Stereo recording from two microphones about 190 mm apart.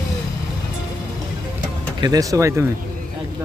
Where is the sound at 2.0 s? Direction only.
20° right (ahead or behind).